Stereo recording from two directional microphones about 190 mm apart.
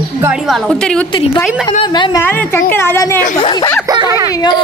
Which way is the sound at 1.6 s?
25° left (ahead or behind).